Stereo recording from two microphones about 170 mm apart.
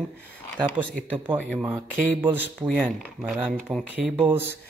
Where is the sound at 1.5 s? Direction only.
10° right (ahead or behind).